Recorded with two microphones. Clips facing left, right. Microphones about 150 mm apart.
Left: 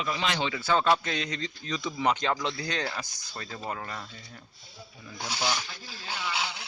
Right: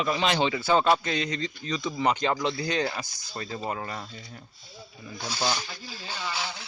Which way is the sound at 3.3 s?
10° right (ahead or behind).